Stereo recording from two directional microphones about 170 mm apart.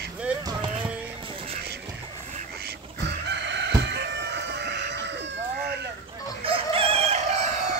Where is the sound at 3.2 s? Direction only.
90° right.